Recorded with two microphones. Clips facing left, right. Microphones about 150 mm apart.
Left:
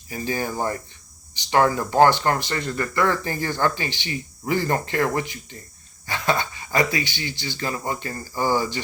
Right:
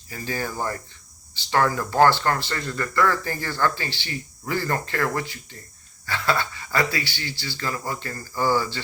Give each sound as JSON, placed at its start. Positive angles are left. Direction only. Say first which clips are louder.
{"t": 0.1, "sound": "speech", "louder": "left 3 dB", "side_deg": 15}